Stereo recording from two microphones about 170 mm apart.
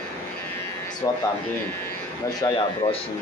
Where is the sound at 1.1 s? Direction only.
20° left (ahead or behind).